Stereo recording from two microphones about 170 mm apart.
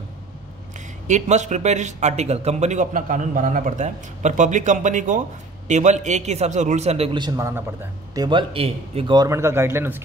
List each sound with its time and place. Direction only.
1.0 s a man's voice: 45° right (ahead or behind)
9.1 s speech: 20° right (ahead or behind)